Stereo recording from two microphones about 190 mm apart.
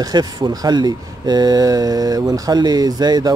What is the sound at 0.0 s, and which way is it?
Speech, 20° right (ahead or behind).